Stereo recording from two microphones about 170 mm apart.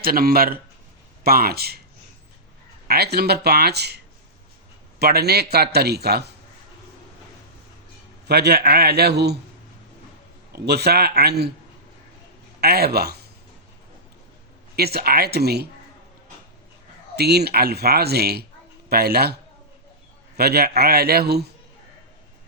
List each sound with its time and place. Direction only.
0.0 s speech: 60° right (ahead or behind)
2.8 s a man's voice: 65° right (ahead or behind)
8.3 s a man's voice: 70° right (ahead or behind)
10.5 s a man's voice: 70° right (ahead or behind)
12.5 s a man's voice: 65° right (ahead or behind)
14.8 s a man's voice: 70° right (ahead or behind)
17.2 s a man's voice: 70° right (ahead or behind)